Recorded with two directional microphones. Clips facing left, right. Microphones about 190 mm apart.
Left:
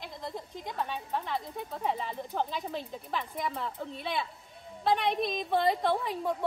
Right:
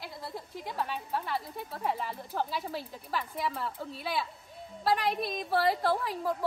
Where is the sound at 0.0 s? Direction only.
5° right (ahead or behind).